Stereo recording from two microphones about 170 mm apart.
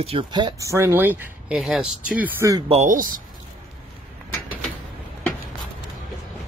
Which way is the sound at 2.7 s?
45° right (ahead or behind).